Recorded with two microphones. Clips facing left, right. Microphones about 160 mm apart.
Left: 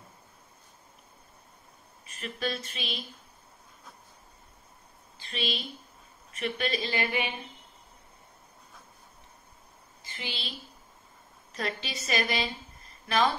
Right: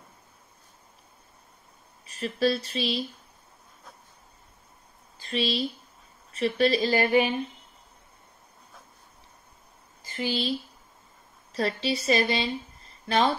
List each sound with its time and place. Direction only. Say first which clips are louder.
2.0 s speech: right 9 dB; 35° right (ahead or behind)
5.2 s speech: right 7 dB; 35° right (ahead or behind)
10.0 s speech: right 11 dB; 40° right (ahead or behind)
11.5 s speech: right 8 dB; 30° right (ahead or behind)